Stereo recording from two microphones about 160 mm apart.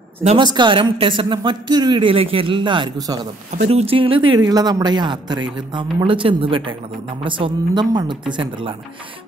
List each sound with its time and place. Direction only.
0.4 s speech: 30° right (ahead or behind)